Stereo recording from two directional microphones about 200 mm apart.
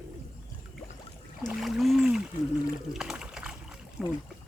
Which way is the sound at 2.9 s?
5° right (ahead or behind).